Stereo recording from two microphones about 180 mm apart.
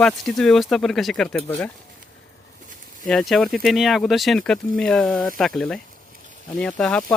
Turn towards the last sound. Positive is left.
turn(degrees=5)  # may be behind; listen again after turning